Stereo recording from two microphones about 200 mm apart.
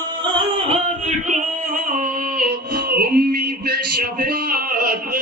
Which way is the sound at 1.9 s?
40° right (ahead or behind).